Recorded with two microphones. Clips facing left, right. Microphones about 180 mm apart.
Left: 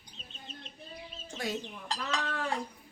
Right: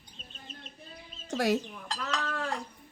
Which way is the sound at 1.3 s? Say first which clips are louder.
Right 9 dB; 85° right.